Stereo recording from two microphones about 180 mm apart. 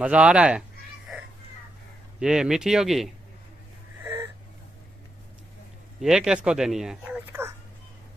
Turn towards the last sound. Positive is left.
turn(degrees=-15)  # may be behind; listen again after turning